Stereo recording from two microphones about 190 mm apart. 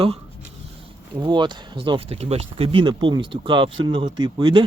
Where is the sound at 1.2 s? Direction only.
25° right (ahead or behind).